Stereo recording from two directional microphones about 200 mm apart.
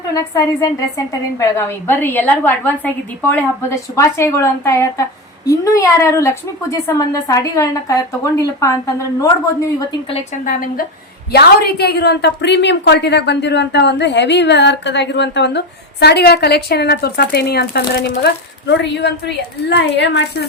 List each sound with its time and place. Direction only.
0.9 s a woman's voice: 15° left (ahead or behind)
10.4 s a woman's voice: 45° left (ahead or behind)